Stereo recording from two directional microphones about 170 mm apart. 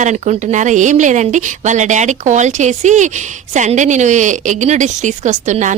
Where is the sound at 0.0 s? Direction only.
45° right (ahead or behind).